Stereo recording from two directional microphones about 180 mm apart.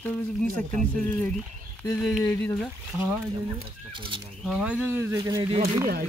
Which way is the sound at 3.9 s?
30° right (ahead or behind).